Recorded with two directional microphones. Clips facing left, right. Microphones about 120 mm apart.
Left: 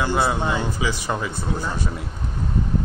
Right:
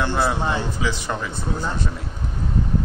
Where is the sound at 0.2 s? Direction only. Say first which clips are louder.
Even; 5° right (ahead or behind).